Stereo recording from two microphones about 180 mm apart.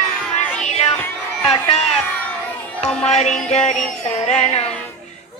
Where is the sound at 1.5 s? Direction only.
35° left (ahead or behind).